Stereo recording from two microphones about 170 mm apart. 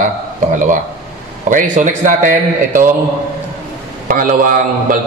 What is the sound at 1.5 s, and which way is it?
A man's voice, 45° right (ahead or behind).